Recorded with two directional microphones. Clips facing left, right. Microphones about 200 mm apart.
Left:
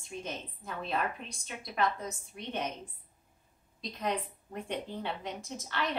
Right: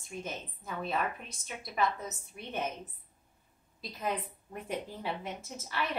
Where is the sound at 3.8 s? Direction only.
5° right (ahead or behind).